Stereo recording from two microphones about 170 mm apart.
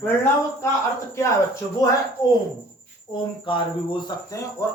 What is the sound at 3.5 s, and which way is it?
Speech, 30° left (ahead or behind).